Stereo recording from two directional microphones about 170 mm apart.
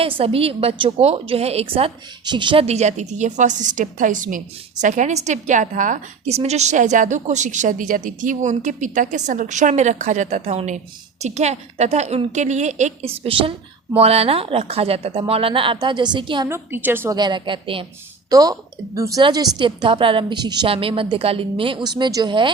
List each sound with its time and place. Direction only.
0.0 s a woman's voice: 35° right (ahead or behind)
16.5 s a woman's voice: 10° right (ahead or behind)
17.2 s a woman's voice: 25° right (ahead or behind)